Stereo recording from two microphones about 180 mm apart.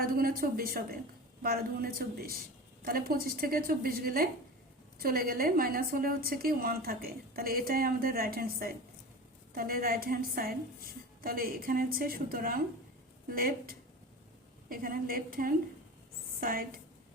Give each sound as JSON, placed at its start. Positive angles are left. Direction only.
{"t": 0.0, "sound": "a woman's voice", "side_deg": -55}